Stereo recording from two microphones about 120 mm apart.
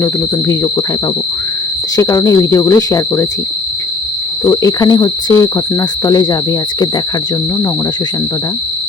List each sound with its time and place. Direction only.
0.0 s speech: 30° left (ahead or behind)
2.0 s speech: 25° left (ahead or behind)
4.4 s speech: 25° left (ahead or behind)